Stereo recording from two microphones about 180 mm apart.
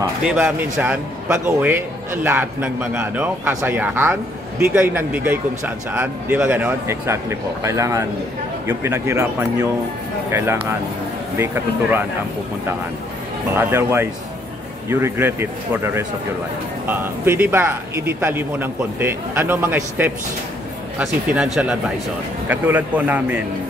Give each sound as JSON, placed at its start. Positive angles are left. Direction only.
{"t": 0.0, "sound": "speech", "side_deg": -10}
{"t": 13.6, "sound": "speech", "side_deg": -15}